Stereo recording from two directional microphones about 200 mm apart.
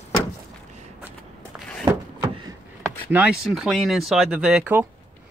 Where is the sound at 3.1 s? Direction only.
5° right (ahead or behind).